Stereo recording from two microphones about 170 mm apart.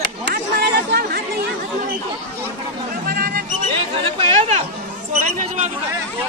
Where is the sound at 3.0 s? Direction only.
65° right (ahead or behind).